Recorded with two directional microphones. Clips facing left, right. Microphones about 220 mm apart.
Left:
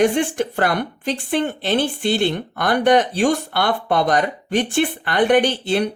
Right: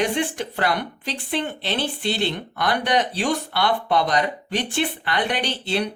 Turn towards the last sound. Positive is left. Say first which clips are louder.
# left 7 dB
turn(degrees=50)  # may be behind; listen again after turning